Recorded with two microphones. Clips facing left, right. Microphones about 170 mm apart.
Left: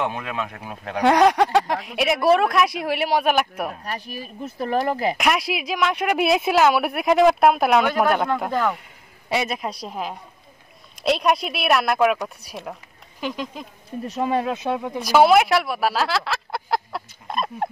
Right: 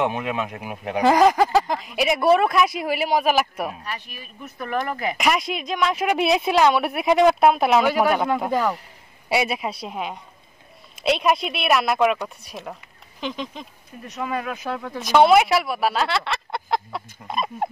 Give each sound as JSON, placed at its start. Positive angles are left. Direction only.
{"t": 0.0, "sound": "speech", "side_deg": -20}
{"t": 1.0, "sound": "speech", "side_deg": 0}
{"t": 3.8, "sound": "speech", "side_deg": 40}
{"t": 5.1, "sound": "speech", "side_deg": 0}
{"t": 14.0, "sound": "speech", "side_deg": 30}
{"t": 15.0, "sound": "speech", "side_deg": 0}